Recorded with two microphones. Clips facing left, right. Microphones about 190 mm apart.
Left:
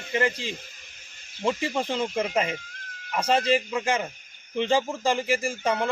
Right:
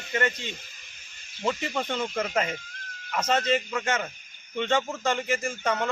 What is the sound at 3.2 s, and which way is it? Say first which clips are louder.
A man's voice: left 3 dB; 30° left (ahead or behind).